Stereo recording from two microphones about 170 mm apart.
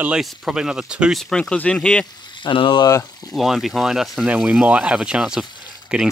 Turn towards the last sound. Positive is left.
turn(degrees=-5)  # may be behind; listen again after turning